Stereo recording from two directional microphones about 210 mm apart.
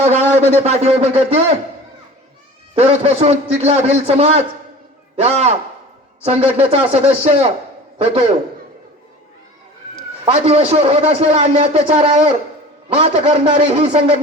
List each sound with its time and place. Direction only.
0.0 s a man's voice: 30° right (ahead or behind)
2.7 s a man's voice: 30° right (ahead or behind)
10.3 s a man's voice: 30° right (ahead or behind)